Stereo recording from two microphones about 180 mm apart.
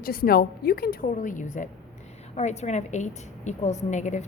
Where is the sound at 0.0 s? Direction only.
55° left (ahead or behind).